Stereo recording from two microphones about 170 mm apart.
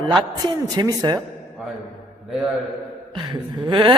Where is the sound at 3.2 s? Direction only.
25° right (ahead or behind).